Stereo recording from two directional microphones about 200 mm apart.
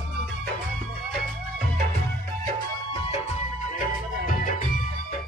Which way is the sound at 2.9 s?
30° left (ahead or behind).